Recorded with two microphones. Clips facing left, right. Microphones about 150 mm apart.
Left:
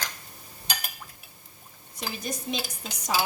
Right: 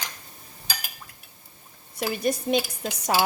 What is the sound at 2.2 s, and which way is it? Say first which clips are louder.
Speech: right 10 dB; 60° right (ahead or behind).